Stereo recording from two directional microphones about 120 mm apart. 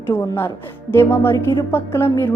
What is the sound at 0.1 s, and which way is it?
A woman's voice, 20° left (ahead or behind).